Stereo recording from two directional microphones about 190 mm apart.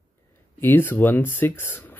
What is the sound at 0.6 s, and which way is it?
Speech, 10° left (ahead or behind).